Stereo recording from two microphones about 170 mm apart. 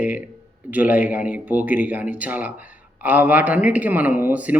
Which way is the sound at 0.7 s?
10° right (ahead or behind).